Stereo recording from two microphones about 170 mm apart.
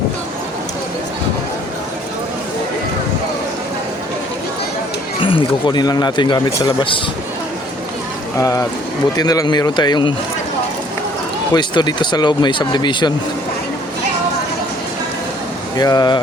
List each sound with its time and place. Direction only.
5.2 s speech: 30° left (ahead or behind)
8.4 s speech: 20° left (ahead or behind)
11.5 s speech: 25° left (ahead or behind)
15.8 s speech: 25° left (ahead or behind)